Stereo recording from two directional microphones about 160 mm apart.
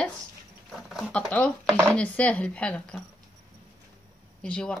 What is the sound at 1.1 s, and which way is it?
Speech, 5° left (ahead or behind).